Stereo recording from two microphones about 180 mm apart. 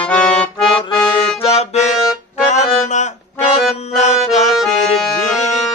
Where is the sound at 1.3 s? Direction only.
35° left (ahead or behind).